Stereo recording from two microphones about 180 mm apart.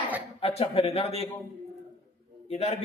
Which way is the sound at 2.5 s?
40° left (ahead or behind).